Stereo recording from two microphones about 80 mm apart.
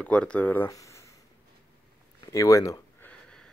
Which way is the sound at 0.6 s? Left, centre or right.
Left.